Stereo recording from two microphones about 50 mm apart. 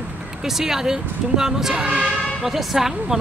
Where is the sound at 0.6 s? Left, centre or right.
Centre.